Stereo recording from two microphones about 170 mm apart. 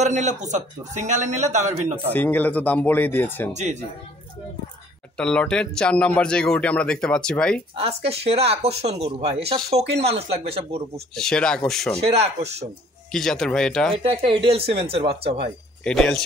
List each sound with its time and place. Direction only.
0.0 s a man's voice: 45° right (ahead or behind)
2.1 s speech: 10° left (ahead or behind)
3.5 s a man's voice: 45° right (ahead or behind)
5.1 s speech: 5° left (ahead or behind)
7.7 s speech: 35° right (ahead or behind)
11.1 s speech: 5° left (ahead or behind)
12.0 s speech: 35° right (ahead or behind)
13.1 s speech: 5° left (ahead or behind)
14.0 s speech: 30° right (ahead or behind)
15.8 s speech: 5° left (ahead or behind)